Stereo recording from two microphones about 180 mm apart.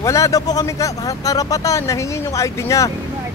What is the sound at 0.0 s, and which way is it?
Speech, 15° left (ahead or behind).